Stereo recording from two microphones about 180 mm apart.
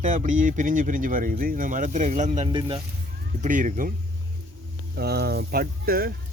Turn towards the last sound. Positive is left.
turn(degrees=-55)  # may be behind; listen again after turning